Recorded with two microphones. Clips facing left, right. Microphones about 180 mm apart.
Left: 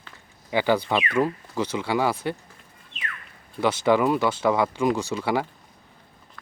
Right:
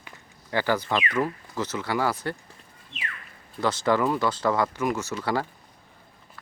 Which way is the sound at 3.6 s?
15° left (ahead or behind).